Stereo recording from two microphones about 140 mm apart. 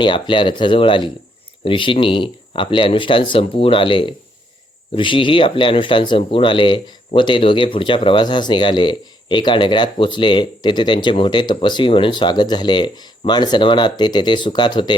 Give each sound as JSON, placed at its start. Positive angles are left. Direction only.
{"t": 0.0, "sound": "speech", "side_deg": 35}